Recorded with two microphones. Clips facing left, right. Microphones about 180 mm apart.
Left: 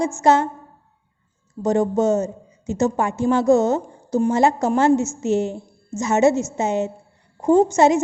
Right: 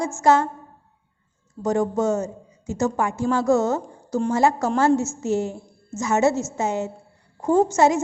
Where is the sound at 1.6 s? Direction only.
20° left (ahead or behind).